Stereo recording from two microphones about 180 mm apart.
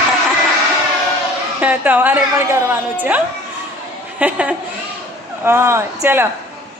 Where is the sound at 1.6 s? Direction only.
10° right (ahead or behind).